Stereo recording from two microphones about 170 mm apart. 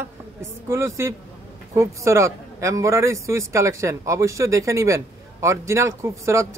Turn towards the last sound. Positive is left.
turn(degrees=-15)  # may be behind; listen again after turning